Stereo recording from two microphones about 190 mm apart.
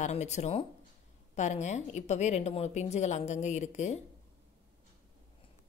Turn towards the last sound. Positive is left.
turn(degrees=35)  # may be behind; listen again after turning